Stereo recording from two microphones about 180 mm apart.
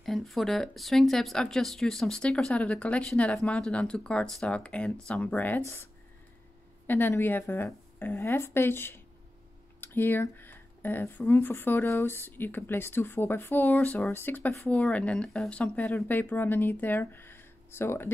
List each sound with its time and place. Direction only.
0.0 s speech: centre (ahead or behind)
6.9 s speech: 10° left (ahead or behind)